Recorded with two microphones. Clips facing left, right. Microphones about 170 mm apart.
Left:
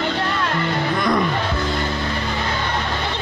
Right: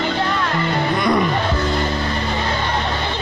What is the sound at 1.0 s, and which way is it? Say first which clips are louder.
Music: right 2 dB; 10° right (ahead or behind).